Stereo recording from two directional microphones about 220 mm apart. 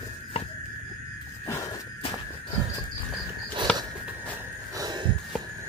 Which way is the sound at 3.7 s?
5° left (ahead or behind).